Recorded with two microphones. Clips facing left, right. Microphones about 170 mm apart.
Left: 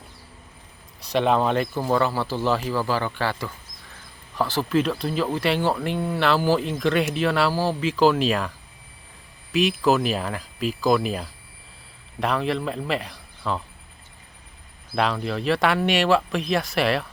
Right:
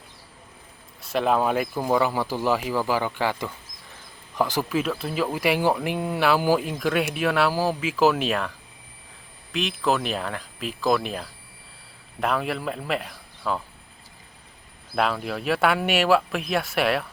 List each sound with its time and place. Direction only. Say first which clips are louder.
1.0 s speech: left 1 dB; centre (ahead or behind)
4.7 s speech: left 3 dB; 5° right (ahead or behind)
14.9 s speech: left 1 dB; 5° right (ahead or behind)